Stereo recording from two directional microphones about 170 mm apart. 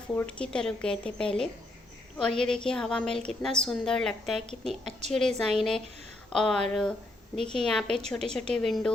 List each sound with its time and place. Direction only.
0.1 s a woman's voice: 10° left (ahead or behind)
4.9 s a woman's voice: 40° right (ahead or behind)
5.5 s a woman's voice: 5° left (ahead or behind)